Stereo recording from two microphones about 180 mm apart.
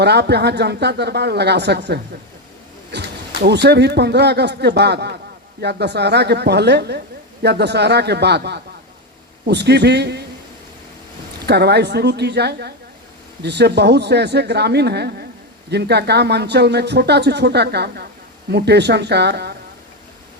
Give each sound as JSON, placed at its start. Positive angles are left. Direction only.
{"t": 0.0, "sound": "speech", "side_deg": -65}
{"t": 3.4, "sound": "a woman's voice", "side_deg": -70}
{"t": 11.4, "sound": "speech", "side_deg": -65}